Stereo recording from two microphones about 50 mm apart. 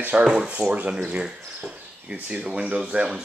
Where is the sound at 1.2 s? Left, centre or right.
Centre.